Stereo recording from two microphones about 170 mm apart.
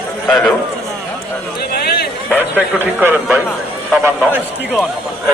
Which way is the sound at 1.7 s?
70° left (ahead or behind).